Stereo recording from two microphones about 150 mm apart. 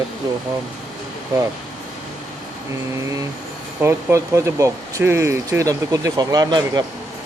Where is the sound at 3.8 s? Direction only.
20° right (ahead or behind).